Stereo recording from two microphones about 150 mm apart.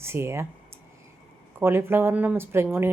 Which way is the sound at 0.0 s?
15° right (ahead or behind).